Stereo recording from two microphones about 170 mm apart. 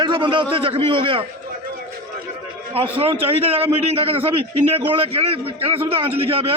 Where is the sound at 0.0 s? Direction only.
30° right (ahead or behind).